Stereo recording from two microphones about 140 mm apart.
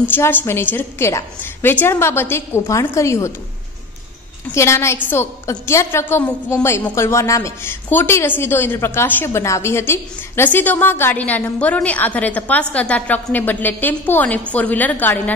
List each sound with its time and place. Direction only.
0.1 s a woman's voice: 15° left (ahead or behind)
4.6 s a woman's voice: 20° left (ahead or behind)